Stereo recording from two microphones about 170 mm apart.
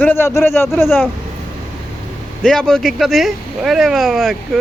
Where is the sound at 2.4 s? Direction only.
5° left (ahead or behind).